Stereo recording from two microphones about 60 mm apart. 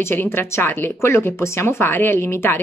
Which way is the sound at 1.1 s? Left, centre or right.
Left.